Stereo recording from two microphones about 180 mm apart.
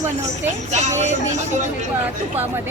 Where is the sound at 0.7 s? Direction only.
40° right (ahead or behind).